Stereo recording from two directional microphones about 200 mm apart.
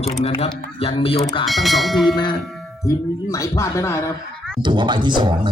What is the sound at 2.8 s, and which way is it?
Speech, 15° left (ahead or behind).